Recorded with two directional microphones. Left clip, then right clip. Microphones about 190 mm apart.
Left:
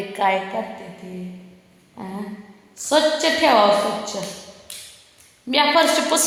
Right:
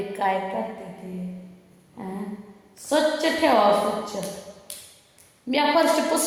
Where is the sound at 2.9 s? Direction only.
25° left (ahead or behind).